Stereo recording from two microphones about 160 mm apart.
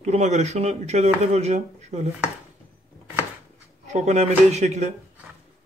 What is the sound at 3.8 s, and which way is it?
Speech, 45° right (ahead or behind).